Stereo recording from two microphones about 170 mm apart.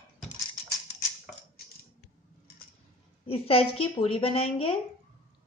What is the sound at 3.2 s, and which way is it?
A woman's voice, 35° left (ahead or behind).